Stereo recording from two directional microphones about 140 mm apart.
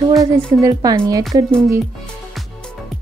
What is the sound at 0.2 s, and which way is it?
A woman's voice, 25° right (ahead or behind).